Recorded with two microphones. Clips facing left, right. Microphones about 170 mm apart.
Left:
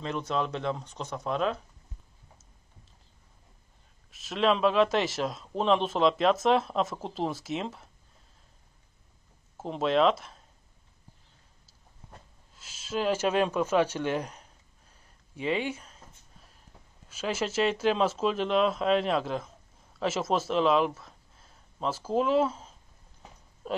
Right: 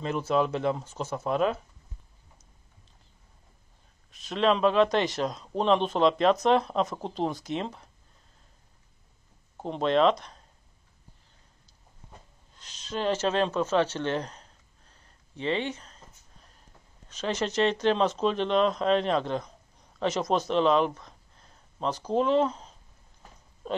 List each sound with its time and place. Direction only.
0.0 s speech: 5° right (ahead or behind)
4.1 s speech: centre (ahead or behind)
9.6 s speech: 5° left (ahead or behind)
12.5 s a sound: 5° left (ahead or behind)
17.1 s speech: 5° left (ahead or behind)
23.6 s a sound: 5° left (ahead or behind)